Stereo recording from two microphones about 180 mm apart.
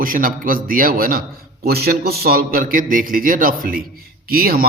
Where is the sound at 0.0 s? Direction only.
50° right (ahead or behind).